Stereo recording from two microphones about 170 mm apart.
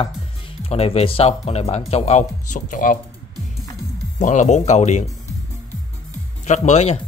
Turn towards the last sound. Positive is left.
turn(degrees=40)  # may be behind; listen again after turning